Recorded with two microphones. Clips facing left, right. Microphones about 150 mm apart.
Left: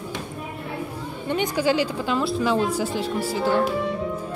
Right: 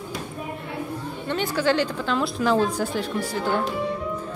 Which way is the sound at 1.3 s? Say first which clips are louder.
Left 1 dB; 10° left (ahead or behind).